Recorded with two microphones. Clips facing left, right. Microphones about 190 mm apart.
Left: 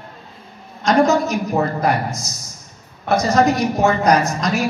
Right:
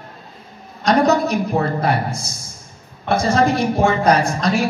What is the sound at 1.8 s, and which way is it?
A woman's voice, 30° right (ahead or behind).